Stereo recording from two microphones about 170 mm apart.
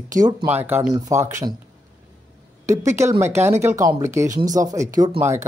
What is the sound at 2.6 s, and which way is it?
A woman's voice, 15° right (ahead or behind).